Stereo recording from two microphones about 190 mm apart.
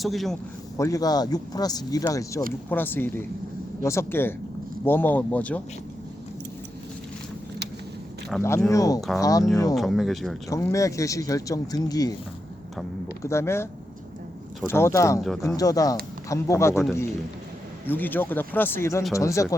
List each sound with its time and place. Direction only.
0.0 s speech: centre (ahead or behind)
0.8 s speech: 20° left (ahead or behind)
8.4 s speech: 15° left (ahead or behind)
9.7 s speech: centre (ahead or behind)
10.5 s speech: 15° left (ahead or behind)
13.2 s speech: 15° left (ahead or behind)
14.7 s speech: 15° left (ahead or behind)
17.8 s speech: 10° left (ahead or behind)